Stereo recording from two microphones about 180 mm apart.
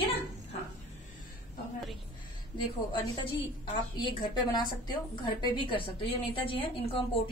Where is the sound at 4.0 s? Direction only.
25° left (ahead or behind).